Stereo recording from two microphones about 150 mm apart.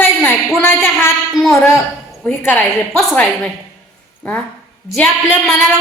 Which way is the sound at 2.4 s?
15° left (ahead or behind).